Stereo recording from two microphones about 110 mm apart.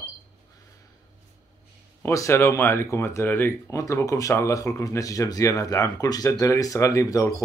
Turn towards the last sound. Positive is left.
turn(degrees=30)  # may be behind; listen again after turning